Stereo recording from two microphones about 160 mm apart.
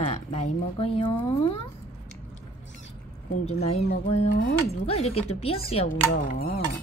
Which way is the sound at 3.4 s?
40° left (ahead or behind).